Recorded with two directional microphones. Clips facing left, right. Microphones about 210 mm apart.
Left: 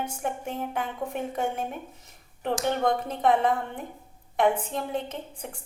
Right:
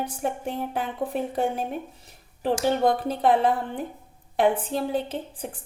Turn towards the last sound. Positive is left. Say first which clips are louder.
# right 4 dB
turn(degrees=-35)  # may be behind; listen again after turning